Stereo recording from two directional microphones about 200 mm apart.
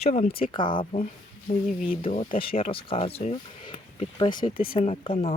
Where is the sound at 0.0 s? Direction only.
35° left (ahead or behind).